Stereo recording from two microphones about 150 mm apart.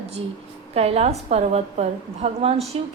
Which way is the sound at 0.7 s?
45° right (ahead or behind).